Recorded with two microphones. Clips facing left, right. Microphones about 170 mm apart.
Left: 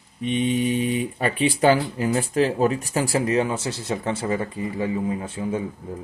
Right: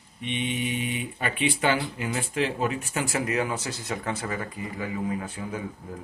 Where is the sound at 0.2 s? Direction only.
40° left (ahead or behind).